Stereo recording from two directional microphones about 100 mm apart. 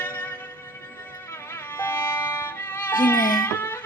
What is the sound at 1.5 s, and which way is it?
Music, 20° left (ahead or behind).